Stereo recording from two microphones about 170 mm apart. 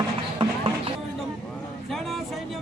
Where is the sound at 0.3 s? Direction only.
30° right (ahead or behind).